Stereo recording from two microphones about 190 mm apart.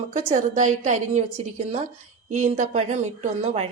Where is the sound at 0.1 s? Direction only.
35° right (ahead or behind).